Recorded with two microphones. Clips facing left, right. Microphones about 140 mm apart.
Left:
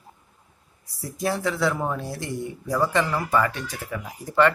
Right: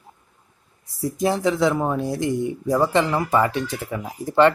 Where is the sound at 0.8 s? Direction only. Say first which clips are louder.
Right 5 dB; 20° right (ahead or behind).